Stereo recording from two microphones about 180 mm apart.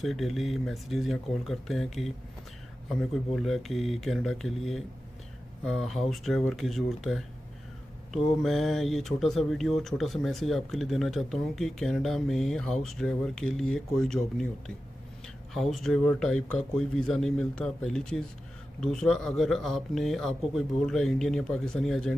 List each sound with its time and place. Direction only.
0.0 s speech: centre (ahead or behind)
15.5 s speech: centre (ahead or behind)